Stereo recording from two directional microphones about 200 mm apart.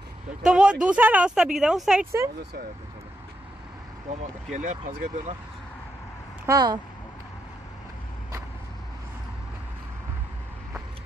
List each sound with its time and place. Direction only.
0.4 s speech: 5° right (ahead or behind)
4.5 s speech: 40° right (ahead or behind)
6.4 s speech: 20° right (ahead or behind)